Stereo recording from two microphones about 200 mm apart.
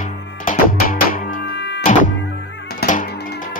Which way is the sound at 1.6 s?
60° left (ahead or behind).